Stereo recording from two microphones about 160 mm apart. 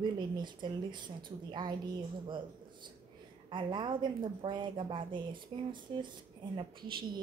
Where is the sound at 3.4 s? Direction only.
30° right (ahead or behind).